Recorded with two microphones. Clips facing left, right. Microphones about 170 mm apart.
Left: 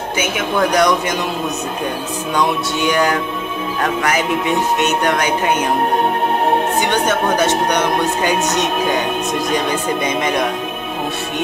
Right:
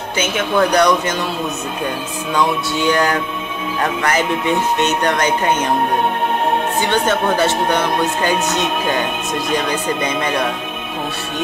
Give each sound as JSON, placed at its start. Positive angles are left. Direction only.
{"t": 0.2, "sound": "speech", "side_deg": 10}
{"t": 2.3, "sound": "speech", "side_deg": 15}
{"t": 4.7, "sound": "speech", "side_deg": 10}
{"t": 6.8, "sound": "speech", "side_deg": 15}
{"t": 9.7, "sound": "speech", "side_deg": 15}